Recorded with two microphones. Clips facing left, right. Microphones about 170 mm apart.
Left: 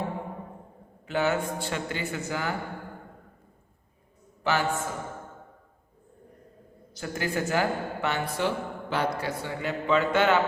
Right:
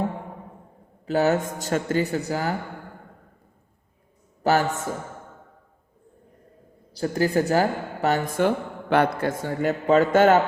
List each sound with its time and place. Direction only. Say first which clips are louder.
1.0 s speech: right 5 dB; 40° right (ahead or behind)
4.4 s speech: right 5 dB; 40° right (ahead or behind)
6.9 s a woman's voice: right 8 dB; 35° right (ahead or behind)